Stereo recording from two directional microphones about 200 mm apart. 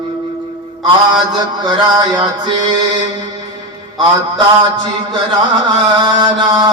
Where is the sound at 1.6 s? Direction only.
20° right (ahead or behind).